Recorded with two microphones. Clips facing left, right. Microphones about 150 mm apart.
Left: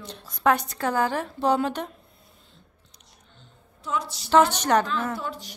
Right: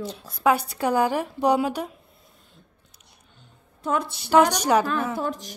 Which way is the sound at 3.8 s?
55° right (ahead or behind).